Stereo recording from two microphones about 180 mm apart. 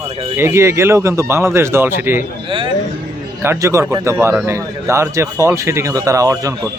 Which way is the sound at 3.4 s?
15° right (ahead or behind).